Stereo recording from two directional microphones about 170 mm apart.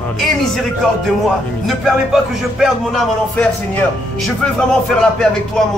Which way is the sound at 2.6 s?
Centre (ahead or behind).